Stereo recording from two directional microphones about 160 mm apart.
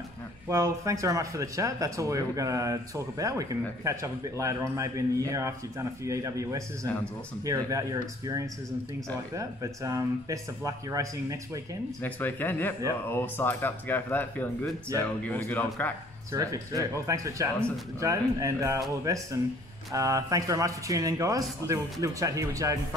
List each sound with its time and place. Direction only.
0.5 s speech: 20° right (ahead or behind)
12.0 s speech: 10° left (ahead or behind)
16.3 s speech: 20° right (ahead or behind)